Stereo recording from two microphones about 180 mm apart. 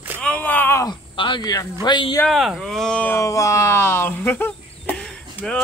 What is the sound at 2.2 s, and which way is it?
Speech, centre (ahead or behind).